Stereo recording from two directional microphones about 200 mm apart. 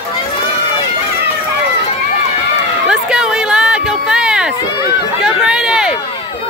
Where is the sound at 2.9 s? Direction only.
5° right (ahead or behind).